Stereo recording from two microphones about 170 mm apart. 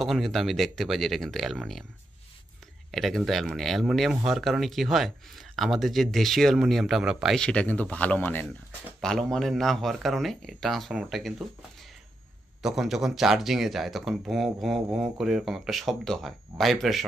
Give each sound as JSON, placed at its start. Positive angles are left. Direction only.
{"t": 0.0, "sound": "speech", "side_deg": 0}
{"t": 2.9, "sound": "speech", "side_deg": 0}